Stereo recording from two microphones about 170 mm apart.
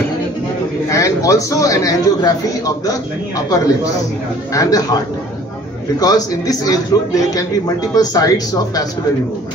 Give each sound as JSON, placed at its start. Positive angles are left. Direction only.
{"t": 0.8, "sound": "a man's voice", "side_deg": 20}
{"t": 5.9, "sound": "a man's voice", "side_deg": 20}